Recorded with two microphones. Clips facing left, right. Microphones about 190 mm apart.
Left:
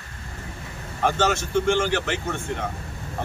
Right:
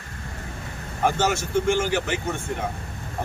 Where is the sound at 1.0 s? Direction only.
10° right (ahead or behind).